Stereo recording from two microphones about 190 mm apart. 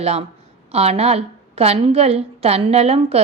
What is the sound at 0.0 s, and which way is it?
A woman's voice, 35° right (ahead or behind).